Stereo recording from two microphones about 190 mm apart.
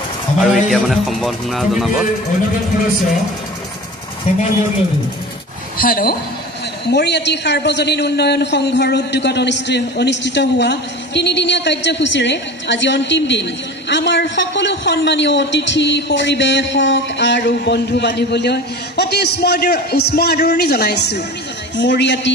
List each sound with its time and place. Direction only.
0.4 s speech: centre (ahead or behind)
5.8 s speech: 50° left (ahead or behind)
6.9 s a man's voice: 65° left (ahead or behind)